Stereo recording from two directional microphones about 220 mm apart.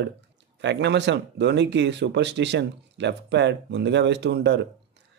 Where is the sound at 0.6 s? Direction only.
50° right (ahead or behind).